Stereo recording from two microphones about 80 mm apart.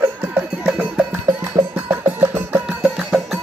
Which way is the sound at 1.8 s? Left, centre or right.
Right.